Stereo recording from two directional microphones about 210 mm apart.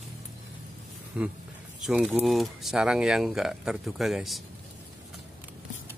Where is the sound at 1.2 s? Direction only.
5° right (ahead or behind).